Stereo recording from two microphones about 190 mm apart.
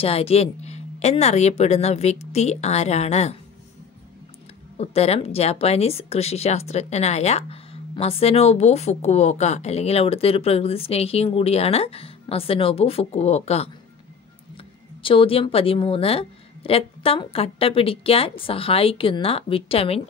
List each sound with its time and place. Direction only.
0.0 s speech: 30° left (ahead or behind)
4.7 s speech: 35° left (ahead or behind)
15.0 s a woman's voice: 30° left (ahead or behind)